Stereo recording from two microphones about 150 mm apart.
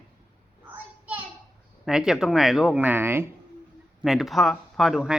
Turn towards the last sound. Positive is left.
turn(degrees=-5)  # may be behind; listen again after turning